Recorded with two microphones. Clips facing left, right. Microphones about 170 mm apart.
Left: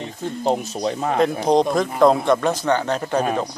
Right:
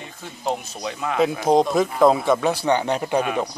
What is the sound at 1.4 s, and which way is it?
Speech, 5° right (ahead or behind).